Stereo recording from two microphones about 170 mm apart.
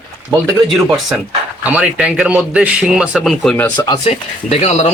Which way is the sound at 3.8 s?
25° left (ahead or behind).